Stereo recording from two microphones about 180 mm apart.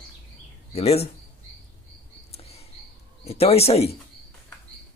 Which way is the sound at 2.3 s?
35° left (ahead or behind).